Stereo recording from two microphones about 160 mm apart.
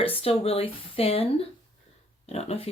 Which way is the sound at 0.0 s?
35° left (ahead or behind).